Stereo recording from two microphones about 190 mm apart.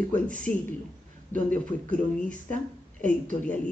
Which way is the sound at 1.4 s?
5° left (ahead or behind).